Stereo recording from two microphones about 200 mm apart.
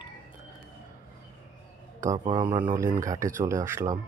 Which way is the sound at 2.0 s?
20° right (ahead or behind).